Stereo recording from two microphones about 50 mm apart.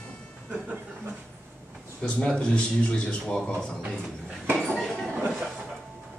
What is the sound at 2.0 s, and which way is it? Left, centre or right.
A man's voice, left.